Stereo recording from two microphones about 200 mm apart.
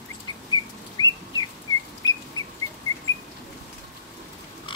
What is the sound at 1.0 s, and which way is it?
Bird, 20° left (ahead or behind).